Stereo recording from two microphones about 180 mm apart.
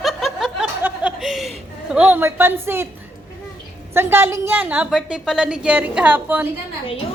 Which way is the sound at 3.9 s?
15° right (ahead or behind).